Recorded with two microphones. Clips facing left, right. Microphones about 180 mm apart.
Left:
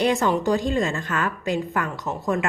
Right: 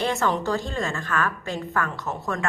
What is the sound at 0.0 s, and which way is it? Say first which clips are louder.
A woman's voice: left 4 dB; 15° left (ahead or behind).